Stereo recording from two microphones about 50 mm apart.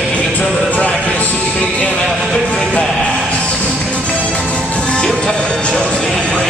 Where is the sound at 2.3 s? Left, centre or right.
Centre.